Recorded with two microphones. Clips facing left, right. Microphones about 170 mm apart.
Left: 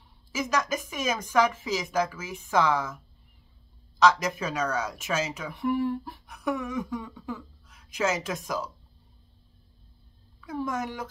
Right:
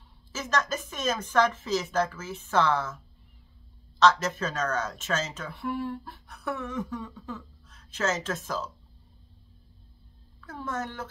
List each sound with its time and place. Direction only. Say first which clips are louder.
0.3 s speech: left 2 dB; 10° left (ahead or behind)
4.0 s speech: even; 10° left (ahead or behind)
10.4 s speech: left 3 dB; 10° left (ahead or behind)